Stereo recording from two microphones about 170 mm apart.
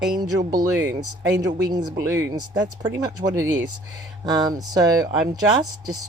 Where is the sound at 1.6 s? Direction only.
20° right (ahead or behind).